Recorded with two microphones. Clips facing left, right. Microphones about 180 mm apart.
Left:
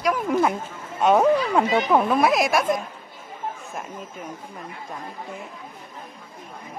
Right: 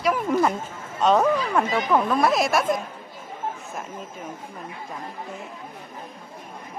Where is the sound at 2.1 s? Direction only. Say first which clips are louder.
Left 1 dB; centre (ahead or behind).